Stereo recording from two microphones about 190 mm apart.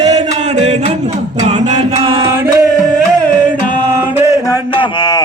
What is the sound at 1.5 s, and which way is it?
Music, 35° right (ahead or behind).